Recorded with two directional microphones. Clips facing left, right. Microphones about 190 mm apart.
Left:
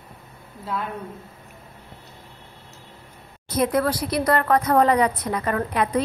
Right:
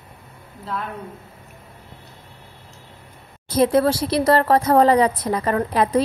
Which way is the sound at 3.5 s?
30° right (ahead or behind).